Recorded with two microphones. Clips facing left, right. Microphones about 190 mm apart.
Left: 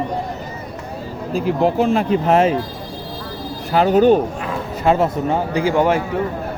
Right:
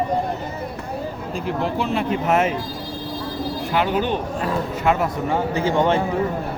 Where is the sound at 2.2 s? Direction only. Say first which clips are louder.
Left 4 dB; 30° left (ahead or behind).